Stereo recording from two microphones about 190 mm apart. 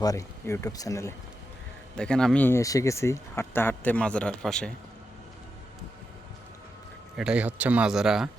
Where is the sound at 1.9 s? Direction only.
5° left (ahead or behind).